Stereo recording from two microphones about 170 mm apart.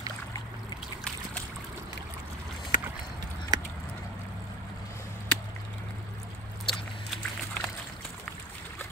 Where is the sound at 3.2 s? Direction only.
20° right (ahead or behind).